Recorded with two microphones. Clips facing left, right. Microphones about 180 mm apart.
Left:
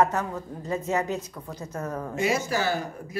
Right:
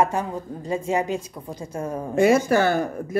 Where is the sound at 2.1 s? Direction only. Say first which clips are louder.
Right 10 dB; 55° right (ahead or behind).